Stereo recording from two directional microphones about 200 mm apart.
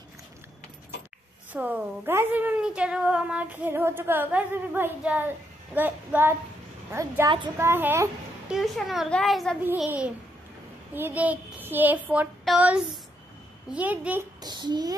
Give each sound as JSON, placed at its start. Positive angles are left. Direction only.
{"t": 1.5, "sound": "a woman's voice", "side_deg": -10}
{"t": 14.4, "sound": "child singing", "side_deg": -20}